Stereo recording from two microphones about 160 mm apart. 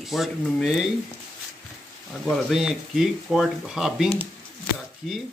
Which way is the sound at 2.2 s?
Centre (ahead or behind).